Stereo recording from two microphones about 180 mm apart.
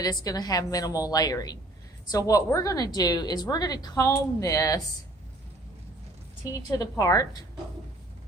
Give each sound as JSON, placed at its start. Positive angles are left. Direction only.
{"t": 0.0, "sound": "a woman's voice", "side_deg": 20}
{"t": 6.5, "sound": "a woman's voice", "side_deg": 20}